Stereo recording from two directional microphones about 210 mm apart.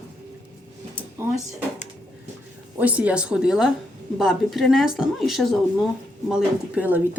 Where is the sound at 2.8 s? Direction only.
5° right (ahead or behind).